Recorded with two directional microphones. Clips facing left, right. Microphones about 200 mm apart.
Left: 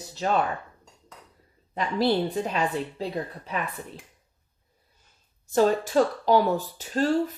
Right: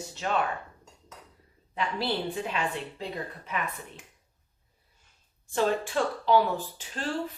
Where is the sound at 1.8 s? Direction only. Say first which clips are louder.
Left 6 dB; 40° left (ahead or behind).